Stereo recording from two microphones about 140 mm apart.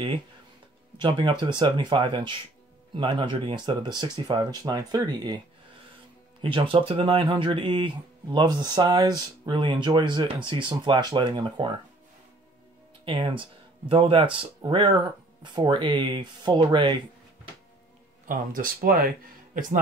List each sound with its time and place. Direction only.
0.9 s speech: 35° right (ahead or behind)
6.4 s speech: 40° right (ahead or behind)
13.0 s speech: 40° right (ahead or behind)
18.2 s speech: 80° right
19.5 s speech: 65° right (ahead or behind)